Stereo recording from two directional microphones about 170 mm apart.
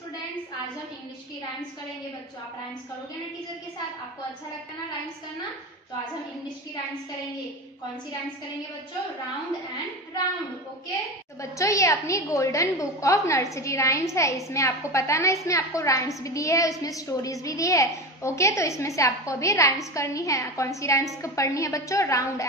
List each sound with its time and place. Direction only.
11.5 s a woman's voice: 20° left (ahead or behind)